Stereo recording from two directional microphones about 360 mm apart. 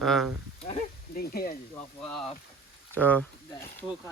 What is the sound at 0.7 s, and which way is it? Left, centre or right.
Speech, centre.